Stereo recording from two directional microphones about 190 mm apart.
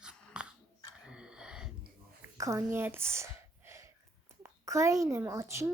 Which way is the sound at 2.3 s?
15° right (ahead or behind).